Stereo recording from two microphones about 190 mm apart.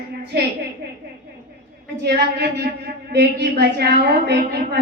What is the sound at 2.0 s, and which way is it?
Speech, 60° right (ahead or behind).